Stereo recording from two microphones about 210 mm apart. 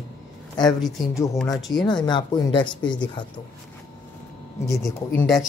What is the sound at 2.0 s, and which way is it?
Speech, 20° left (ahead or behind).